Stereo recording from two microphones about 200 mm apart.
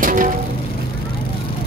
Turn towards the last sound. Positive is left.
turn(degrees=-40)  # may be behind; listen again after turning